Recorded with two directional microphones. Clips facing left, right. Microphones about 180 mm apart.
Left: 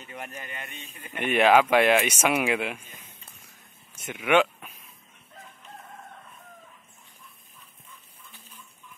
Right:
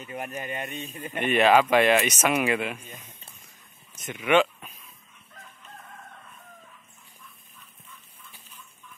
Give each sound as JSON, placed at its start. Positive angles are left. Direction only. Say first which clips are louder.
{"t": 0.2, "sound": "speech", "louder": "right 7 dB", "side_deg": -15}
{"t": 1.1, "sound": "speech", "louder": "even", "side_deg": 10}
{"t": 4.0, "sound": "a sound", "louder": "even", "side_deg": 10}